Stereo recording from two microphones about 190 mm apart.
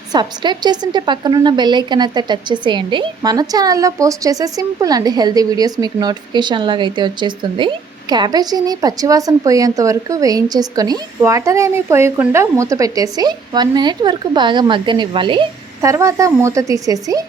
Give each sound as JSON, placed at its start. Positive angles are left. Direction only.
{"t": 0.1, "sound": "a woman's voice", "side_deg": -20}